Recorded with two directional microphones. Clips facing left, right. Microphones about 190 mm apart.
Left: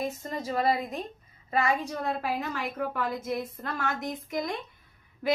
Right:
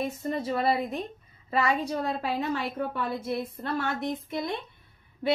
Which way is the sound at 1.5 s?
30° right (ahead or behind).